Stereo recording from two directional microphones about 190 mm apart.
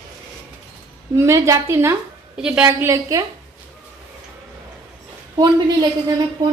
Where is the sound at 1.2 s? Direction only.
15° right (ahead or behind).